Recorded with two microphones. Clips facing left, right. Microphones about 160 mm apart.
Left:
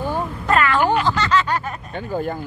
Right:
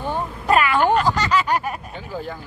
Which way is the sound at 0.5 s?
15° right (ahead or behind).